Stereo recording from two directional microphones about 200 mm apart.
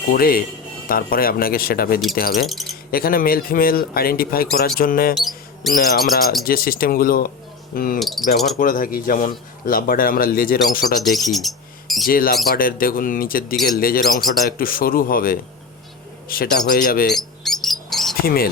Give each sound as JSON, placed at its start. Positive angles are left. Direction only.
{"t": 0.1, "sound": "speech", "side_deg": 45}
{"t": 2.5, "sound": "a sound", "side_deg": 0}
{"t": 2.9, "sound": "speech", "side_deg": 45}
{"t": 5.1, "sound": "mouse", "side_deg": 0}
{"t": 5.7, "sound": "speech", "side_deg": 50}
{"t": 7.9, "sound": "wind chime", "side_deg": 0}
{"t": 8.5, "sound": "speech", "side_deg": 45}
{"t": 11.0, "sound": "speech", "side_deg": 0}
{"t": 12.0, "sound": "speech", "side_deg": 45}
{"t": 17.1, "sound": "rodents", "side_deg": 0}